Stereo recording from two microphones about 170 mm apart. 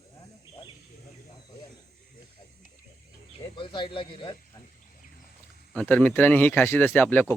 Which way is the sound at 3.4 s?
30° left (ahead or behind).